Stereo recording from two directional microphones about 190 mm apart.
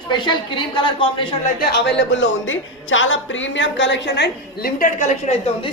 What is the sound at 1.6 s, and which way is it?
A woman's voice, 65° left (ahead or behind).